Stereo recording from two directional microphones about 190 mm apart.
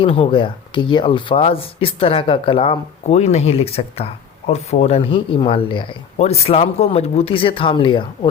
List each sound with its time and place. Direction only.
0.0 s speech: 25° left (ahead or behind)